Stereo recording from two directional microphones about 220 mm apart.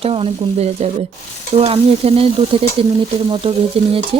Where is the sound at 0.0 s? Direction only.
25° right (ahead or behind).